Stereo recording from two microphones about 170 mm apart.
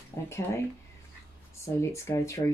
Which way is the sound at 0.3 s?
15° left (ahead or behind).